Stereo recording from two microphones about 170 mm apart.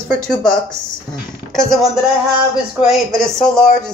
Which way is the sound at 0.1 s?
5° left (ahead or behind).